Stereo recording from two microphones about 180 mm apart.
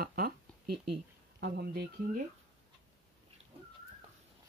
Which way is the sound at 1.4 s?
60° right (ahead or behind).